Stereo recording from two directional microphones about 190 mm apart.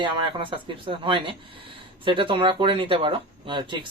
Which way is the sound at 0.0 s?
25° right (ahead or behind).